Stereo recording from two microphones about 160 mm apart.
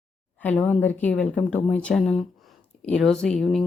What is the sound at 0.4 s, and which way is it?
Speech, 10° left (ahead or behind).